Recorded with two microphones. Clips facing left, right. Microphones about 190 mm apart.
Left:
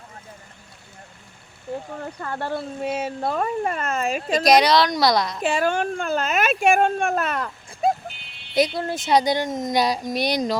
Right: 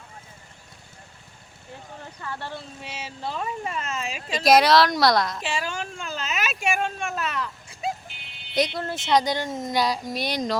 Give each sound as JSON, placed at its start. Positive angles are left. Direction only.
{"t": 2.0, "sound": "speech", "side_deg": 55}
{"t": 4.4, "sound": "a woman's voice", "side_deg": 0}
{"t": 5.4, "sound": "speech", "side_deg": 55}
{"t": 8.6, "sound": "speech", "side_deg": 5}